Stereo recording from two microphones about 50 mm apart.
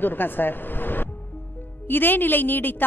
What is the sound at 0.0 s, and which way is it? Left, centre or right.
A woman's voice, left.